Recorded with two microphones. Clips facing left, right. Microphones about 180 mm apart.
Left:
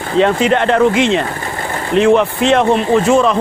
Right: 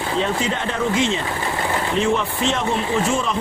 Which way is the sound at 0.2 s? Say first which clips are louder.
Left 13 dB; 75° left (ahead or behind).